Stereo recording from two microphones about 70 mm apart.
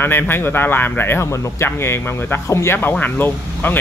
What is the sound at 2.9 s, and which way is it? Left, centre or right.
Speech, left.